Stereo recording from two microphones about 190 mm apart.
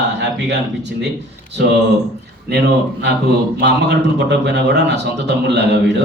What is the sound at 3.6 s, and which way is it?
Speech, 65° right (ahead or behind).